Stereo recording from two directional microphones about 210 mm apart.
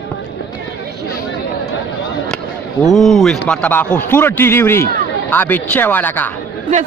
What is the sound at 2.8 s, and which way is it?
A man's voice, centre (ahead or behind).